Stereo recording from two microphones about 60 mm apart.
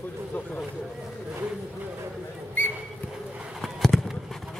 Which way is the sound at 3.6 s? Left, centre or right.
Centre.